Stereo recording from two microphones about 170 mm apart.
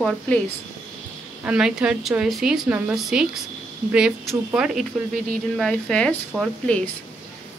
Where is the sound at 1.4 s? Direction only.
5° right (ahead or behind).